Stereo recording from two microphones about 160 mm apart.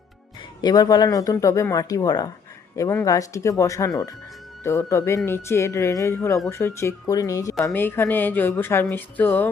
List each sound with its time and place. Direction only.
0.6 s a woman's voice: 25° left (ahead or behind)